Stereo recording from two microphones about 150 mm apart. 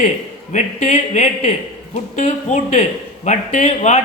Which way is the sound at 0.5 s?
55° left (ahead or behind).